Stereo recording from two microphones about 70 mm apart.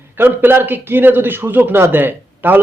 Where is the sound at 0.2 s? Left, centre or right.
Right.